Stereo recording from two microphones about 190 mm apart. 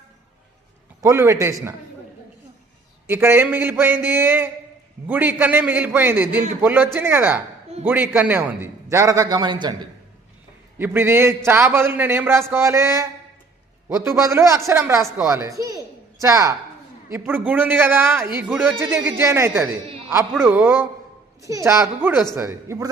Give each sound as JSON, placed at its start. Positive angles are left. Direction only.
{"t": 1.0, "sound": "a man's voice", "side_deg": -15}
{"t": 3.1, "sound": "a man's voice", "side_deg": -10}
{"t": 10.8, "sound": "a man's voice", "side_deg": -10}